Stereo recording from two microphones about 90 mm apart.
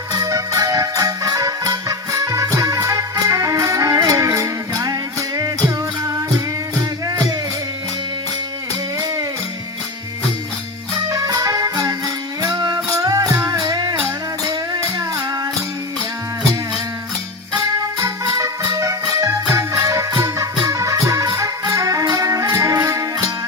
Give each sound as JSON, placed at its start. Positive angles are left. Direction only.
{"t": 0.1, "sound": "music", "side_deg": -40}
{"t": 11.1, "sound": "music", "side_deg": -40}
{"t": 18.0, "sound": "music", "side_deg": -35}